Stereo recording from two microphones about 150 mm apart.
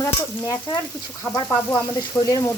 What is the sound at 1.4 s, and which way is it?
Stir, 10° left (ahead or behind).